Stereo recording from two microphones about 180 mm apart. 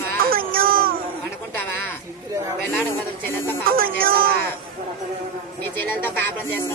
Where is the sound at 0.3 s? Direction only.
55° right (ahead or behind).